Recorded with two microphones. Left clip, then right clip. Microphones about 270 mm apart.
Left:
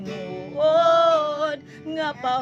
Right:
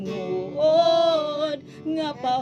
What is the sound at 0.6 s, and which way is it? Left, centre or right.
Female singing, left.